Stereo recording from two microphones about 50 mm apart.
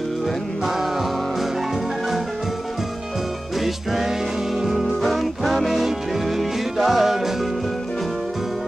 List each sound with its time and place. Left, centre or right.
0.7 s music: centre
3.6 s music: centre